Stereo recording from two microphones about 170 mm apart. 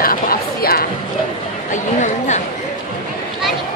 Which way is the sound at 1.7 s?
45° left (ahead or behind).